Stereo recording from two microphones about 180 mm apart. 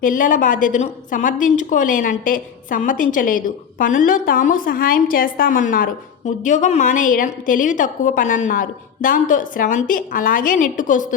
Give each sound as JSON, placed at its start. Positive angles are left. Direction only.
{"t": 0.0, "sound": "a woman's voice", "side_deg": 50}